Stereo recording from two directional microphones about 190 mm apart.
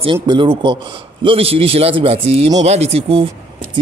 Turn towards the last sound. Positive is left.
turn(degrees=-30)  # may be behind; listen again after turning